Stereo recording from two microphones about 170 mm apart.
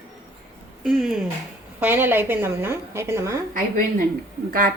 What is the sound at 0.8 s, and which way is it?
Speech, centre (ahead or behind).